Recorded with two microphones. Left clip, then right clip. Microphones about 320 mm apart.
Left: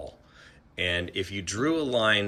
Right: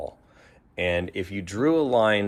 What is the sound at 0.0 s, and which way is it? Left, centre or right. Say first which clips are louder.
Speech: right 6 dB; centre.